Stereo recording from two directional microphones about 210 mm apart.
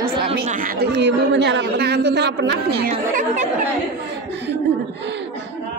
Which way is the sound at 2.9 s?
35° right (ahead or behind).